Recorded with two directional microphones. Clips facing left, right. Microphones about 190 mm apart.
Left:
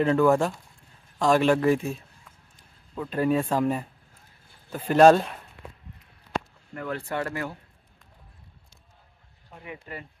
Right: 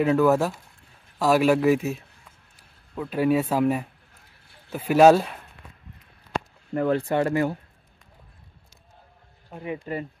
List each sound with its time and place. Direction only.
0.0 s a man's voice: 5° right (ahead or behind)
6.7 s speech: 35° right (ahead or behind)
7.0 s speech: 20° right (ahead or behind)
9.7 s speech: 30° right (ahead or behind)